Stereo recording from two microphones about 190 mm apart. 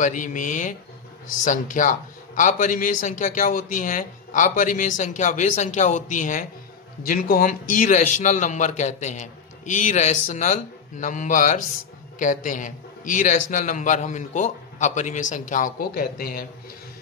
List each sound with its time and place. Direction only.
0.0 s a man's voice: 45° left (ahead or behind)